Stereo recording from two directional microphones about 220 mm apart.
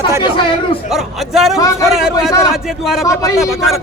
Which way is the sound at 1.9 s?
Centre (ahead or behind).